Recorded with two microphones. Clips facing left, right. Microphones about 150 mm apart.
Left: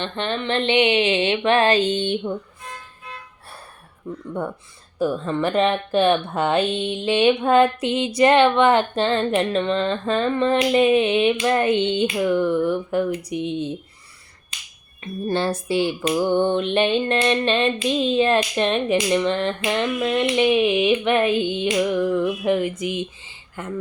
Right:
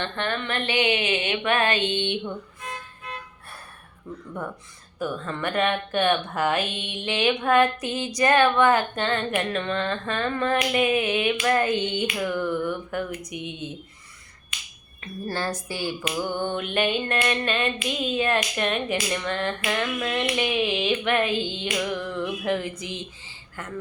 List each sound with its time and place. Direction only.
0.0 s speech: 20° left (ahead or behind); by 2.3 s 40° left (ahead or behind)
4.9 s speech: 30° left (ahead or behind)
15.0 s speech: 25° left (ahead or behind)
22.1 s a sound: 15° left (ahead or behind)
22.8 s speech: 20° left (ahead or behind)